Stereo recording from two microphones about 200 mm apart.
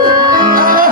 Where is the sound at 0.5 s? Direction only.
45° right (ahead or behind).